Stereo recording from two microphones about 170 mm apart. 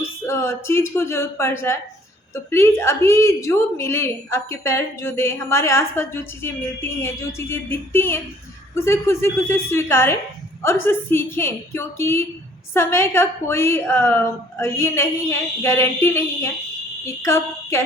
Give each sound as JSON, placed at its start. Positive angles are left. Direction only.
{"t": 0.0, "sound": "a woman's voice", "side_deg": 15}